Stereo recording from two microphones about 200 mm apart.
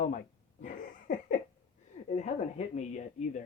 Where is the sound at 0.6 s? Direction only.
40° left (ahead or behind).